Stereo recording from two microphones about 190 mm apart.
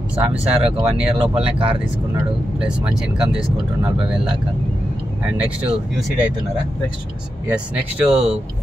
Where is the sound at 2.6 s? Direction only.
5° right (ahead or behind).